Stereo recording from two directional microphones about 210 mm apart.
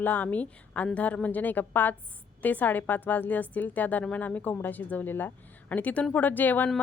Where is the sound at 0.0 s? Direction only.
10° left (ahead or behind).